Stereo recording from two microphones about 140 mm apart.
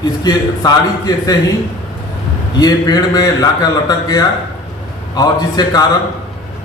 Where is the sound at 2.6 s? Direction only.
30° left (ahead or behind).